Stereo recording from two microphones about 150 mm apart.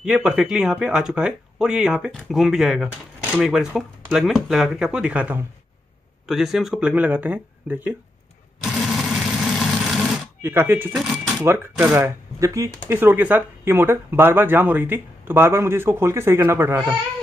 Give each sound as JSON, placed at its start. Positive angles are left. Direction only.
{"t": 0.0, "sound": "speech", "side_deg": -5}
{"t": 8.7, "sound": "vehicle", "side_deg": 0}
{"t": 10.4, "sound": "speech", "side_deg": -15}
{"t": 11.4, "sound": "speech", "side_deg": -15}